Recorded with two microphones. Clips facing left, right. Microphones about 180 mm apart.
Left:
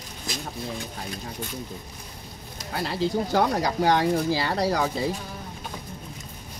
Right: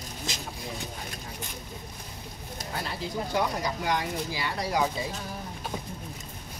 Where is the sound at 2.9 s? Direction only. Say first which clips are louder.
Left 7 dB; 75° left (ahead or behind).